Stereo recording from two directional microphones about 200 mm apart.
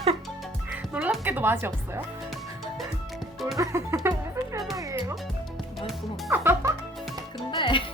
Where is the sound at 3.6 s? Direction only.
15° right (ahead or behind).